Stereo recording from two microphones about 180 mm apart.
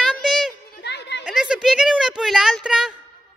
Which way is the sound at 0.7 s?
70° left (ahead or behind).